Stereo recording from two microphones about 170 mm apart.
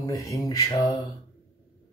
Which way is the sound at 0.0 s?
20° left (ahead or behind).